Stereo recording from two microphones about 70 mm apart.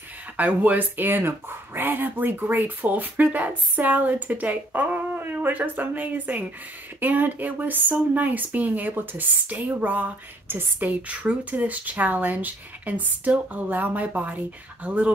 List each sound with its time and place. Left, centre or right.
0.4 s speech: right